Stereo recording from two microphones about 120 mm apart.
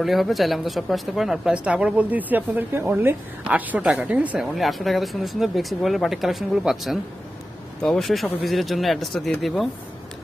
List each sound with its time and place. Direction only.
0.0 s speech: centre (ahead or behind)
4.5 s speech: centre (ahead or behind)